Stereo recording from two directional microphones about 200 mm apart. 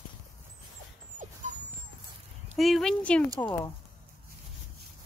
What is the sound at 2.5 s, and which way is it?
Speech, centre (ahead or behind).